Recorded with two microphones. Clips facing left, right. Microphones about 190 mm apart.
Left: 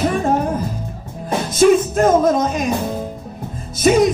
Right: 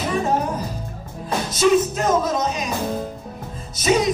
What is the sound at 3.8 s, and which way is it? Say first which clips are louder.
Music: left 6 dB; 50° left (ahead or behind).